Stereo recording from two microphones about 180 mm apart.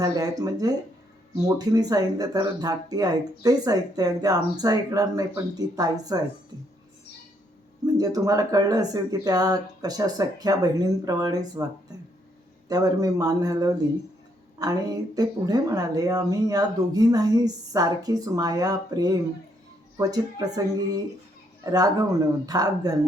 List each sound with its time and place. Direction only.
0.0 s speech: 20° right (ahead or behind)
7.9 s speech: 20° right (ahead or behind)
21.6 s speech: 20° right (ahead or behind)